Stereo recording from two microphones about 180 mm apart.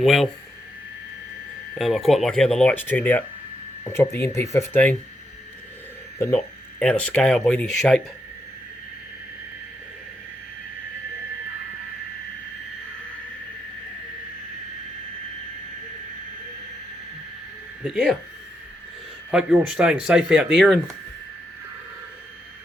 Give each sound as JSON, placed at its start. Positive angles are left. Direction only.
{"t": 0.0, "sound": "speech", "side_deg": 0}
{"t": 1.7, "sound": "speech", "side_deg": 0}
{"t": 6.1, "sound": "speech", "side_deg": 15}
{"t": 17.8, "sound": "speech", "side_deg": -5}
{"t": 19.3, "sound": "speech", "side_deg": -5}